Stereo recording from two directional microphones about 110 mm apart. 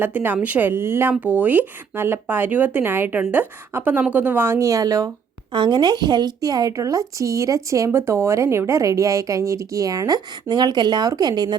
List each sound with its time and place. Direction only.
0.0 s speech: 15° right (ahead or behind)
5.5 s speech: 45° right (ahead or behind)